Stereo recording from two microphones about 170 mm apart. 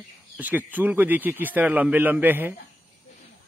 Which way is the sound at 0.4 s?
10° right (ahead or behind).